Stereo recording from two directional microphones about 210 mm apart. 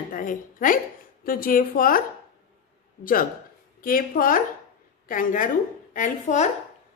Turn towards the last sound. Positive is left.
turn(degrees=35)  # may be behind; listen again after turning